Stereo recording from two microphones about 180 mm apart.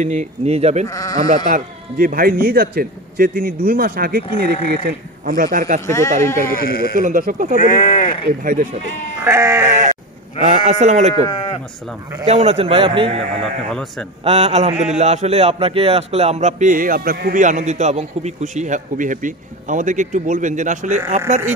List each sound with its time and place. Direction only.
0.0 s a man's voice: 40° right (ahead or behind)
0.8 s speech: 20° left (ahead or behind)
1.3 s speech: 50° right (ahead or behind)
5.9 s speech: 15° left (ahead or behind)
7.0 s speech: 50° right (ahead or behind)
7.5 s speech: 50° left (ahead or behind)
9.2 s sheep: 15° right (ahead or behind)
9.7 s sheep: 45° right (ahead or behind)
10.4 s a man's voice: 40° right (ahead or behind)
11.2 s speech: 25° left (ahead or behind)
12.3 s a man's voice: 35° right (ahead or behind)
13.7 s a man's voice: 5° left (ahead or behind)
14.2 s a man's voice: 35° right (ahead or behind)